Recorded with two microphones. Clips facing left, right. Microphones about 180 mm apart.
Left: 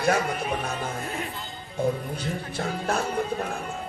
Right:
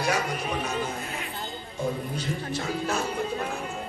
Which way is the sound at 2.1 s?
55° left (ahead or behind).